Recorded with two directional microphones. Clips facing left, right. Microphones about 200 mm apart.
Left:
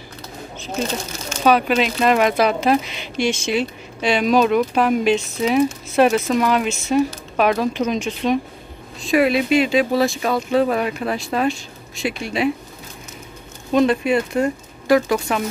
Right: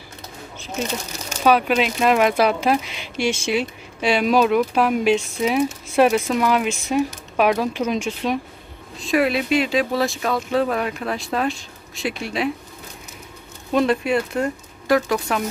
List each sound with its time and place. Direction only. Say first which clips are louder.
1.4 s speech: left 1 dB; 5° right (ahead or behind)
13.7 s speech: left 2 dB; centre (ahead or behind)